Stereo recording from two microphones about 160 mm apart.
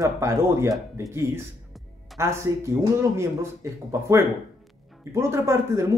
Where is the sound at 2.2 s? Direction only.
15° right (ahead or behind).